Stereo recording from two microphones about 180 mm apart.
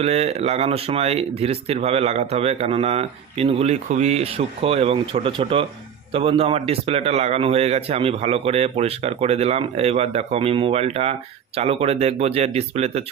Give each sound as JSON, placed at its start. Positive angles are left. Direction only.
{"t": 0.0, "sound": "a man's voice", "side_deg": -35}